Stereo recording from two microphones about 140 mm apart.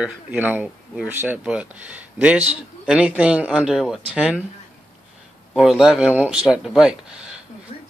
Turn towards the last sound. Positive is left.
turn(degrees=-5)  # may be behind; listen again after turning